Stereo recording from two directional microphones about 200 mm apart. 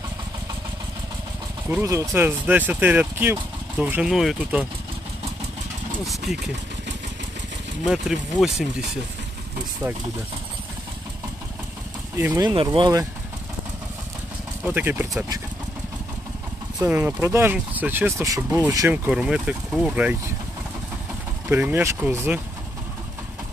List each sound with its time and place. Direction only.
1.7 s speech: 15° right (ahead or behind)
6.3 s speech: centre (ahead or behind)
7.8 s speech: centre (ahead or behind)
12.2 s speech: 10° right (ahead or behind)
12.5 s speech: 20° right (ahead or behind)
14.6 s speech: 10° right (ahead or behind)
16.8 s speech: 10° right (ahead or behind)
21.5 s speech: 10° right (ahead or behind)